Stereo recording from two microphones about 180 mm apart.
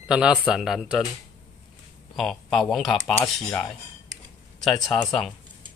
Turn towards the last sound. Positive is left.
turn(degrees=5)  # may be behind; listen again after turning